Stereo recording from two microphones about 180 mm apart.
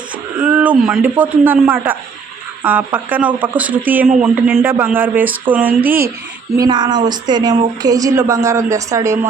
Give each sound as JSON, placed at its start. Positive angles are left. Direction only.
{"t": 0.4, "sound": "a sound", "side_deg": -10}
{"t": 0.8, "sound": "speech", "side_deg": -5}
{"t": 6.6, "sound": "speech", "side_deg": -25}